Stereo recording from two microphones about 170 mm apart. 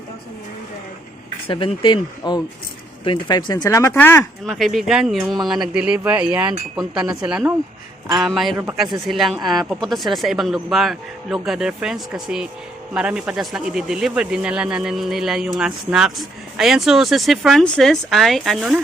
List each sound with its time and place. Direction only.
1.5 s speech: 30° left (ahead or behind); by 4.3 s 10° left (ahead or behind)
4.4 s speech: centre (ahead or behind)